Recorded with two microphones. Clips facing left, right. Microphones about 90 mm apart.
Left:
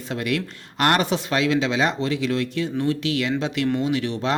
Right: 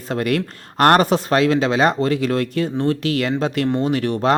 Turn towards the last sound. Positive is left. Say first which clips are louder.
# right 5 dB
turn(degrees=-45)  # may be behind; listen again after turning